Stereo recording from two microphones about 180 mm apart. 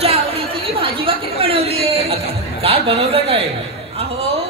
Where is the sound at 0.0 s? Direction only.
35° right (ahead or behind).